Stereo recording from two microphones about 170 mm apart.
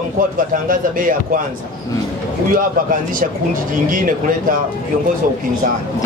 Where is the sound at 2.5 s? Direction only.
55° right (ahead or behind).